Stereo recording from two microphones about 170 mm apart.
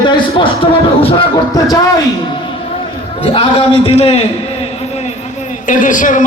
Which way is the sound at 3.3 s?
35° left (ahead or behind).